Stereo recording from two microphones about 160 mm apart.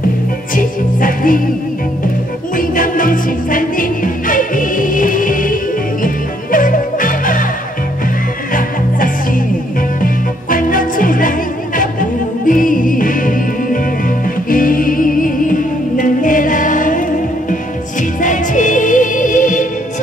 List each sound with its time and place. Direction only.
0.6 s music: 60° left (ahead or behind)
2.5 s music: 60° left (ahead or behind)
8.5 s music: 60° left (ahead or behind)
18.2 s music: 50° left (ahead or behind)